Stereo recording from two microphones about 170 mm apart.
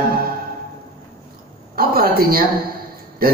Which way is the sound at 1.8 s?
60° right (ahead or behind).